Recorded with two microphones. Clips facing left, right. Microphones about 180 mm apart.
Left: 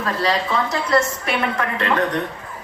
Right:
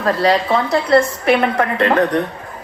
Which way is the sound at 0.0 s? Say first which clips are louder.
Right 6 dB; 35° right (ahead or behind).